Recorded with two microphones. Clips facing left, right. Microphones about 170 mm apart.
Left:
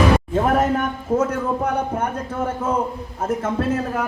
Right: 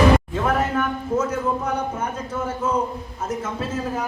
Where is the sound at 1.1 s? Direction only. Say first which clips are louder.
Left 3 dB; 60° left (ahead or behind).